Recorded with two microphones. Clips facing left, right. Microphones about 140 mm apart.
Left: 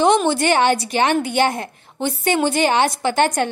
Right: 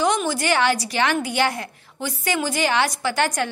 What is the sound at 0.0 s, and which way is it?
A woman's voice, 25° left (ahead or behind).